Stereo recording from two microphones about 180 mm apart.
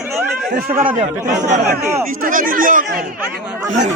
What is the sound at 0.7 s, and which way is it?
Speech, 10° right (ahead or behind).